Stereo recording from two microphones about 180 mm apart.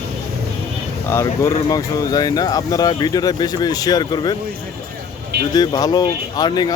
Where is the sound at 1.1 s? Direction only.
15° left (ahead or behind).